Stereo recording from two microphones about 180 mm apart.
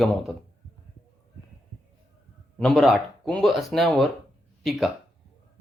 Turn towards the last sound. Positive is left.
turn(degrees=0)  # may be behind; listen again after turning